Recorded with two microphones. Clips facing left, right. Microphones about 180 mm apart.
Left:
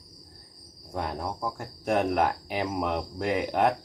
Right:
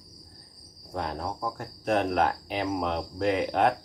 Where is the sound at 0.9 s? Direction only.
10° left (ahead or behind).